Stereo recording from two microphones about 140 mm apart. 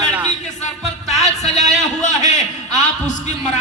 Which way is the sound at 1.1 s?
55° left (ahead or behind).